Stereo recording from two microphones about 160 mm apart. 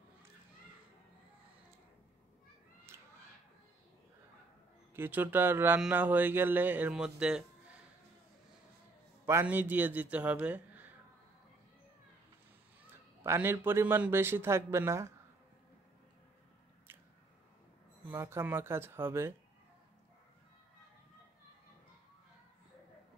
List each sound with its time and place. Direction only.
2.9 s cat: 15° right (ahead or behind)
4.9 s speech: 15° right (ahead or behind)
9.2 s speech: 15° right (ahead or behind)
13.2 s speech: 15° right (ahead or behind)
18.1 s speech: 15° right (ahead or behind)